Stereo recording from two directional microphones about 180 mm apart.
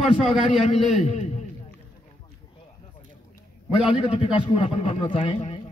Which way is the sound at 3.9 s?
35° left (ahead or behind).